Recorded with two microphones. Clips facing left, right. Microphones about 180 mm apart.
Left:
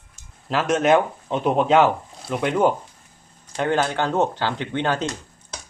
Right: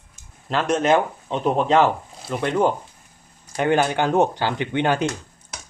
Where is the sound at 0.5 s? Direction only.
5° left (ahead or behind).